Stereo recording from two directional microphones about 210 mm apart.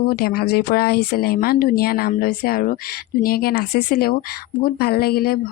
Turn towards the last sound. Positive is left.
turn(degrees=45)  # may be behind; listen again after turning